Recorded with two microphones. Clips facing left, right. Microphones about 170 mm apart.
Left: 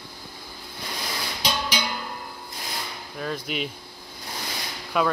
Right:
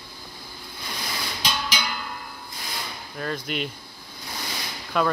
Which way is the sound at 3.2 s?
Centre (ahead or behind).